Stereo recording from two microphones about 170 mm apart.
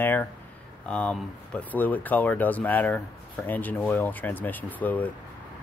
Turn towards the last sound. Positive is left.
turn(degrees=10)  # may be behind; listen again after turning